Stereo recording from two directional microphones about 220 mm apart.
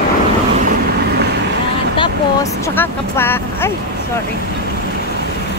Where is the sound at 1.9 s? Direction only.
15° left (ahead or behind).